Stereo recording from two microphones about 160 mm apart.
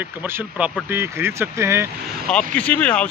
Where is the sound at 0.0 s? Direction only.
10° right (ahead or behind).